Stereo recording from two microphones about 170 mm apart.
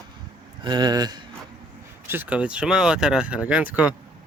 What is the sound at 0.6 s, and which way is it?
Speech, 25° right (ahead or behind).